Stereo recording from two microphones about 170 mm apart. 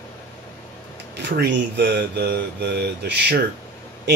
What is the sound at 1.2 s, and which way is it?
Speech, 90° right.